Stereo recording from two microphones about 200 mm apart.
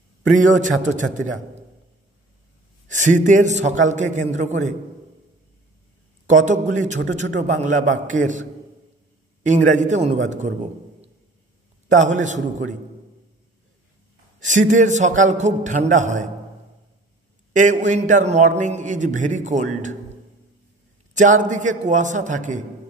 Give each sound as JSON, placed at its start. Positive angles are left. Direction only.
{"t": 0.6, "sound": "a man's voice", "side_deg": -40}
{"t": 2.9, "sound": "a man's voice", "side_deg": -40}
{"t": 6.3, "sound": "a man's voice", "side_deg": -40}
{"t": 11.9, "sound": "a man's voice", "side_deg": -40}
{"t": 14.4, "sound": "a man's voice", "side_deg": -40}
{"t": 17.5, "sound": "a man's voice", "side_deg": -40}
{"t": 21.1, "sound": "a man's voice", "side_deg": -40}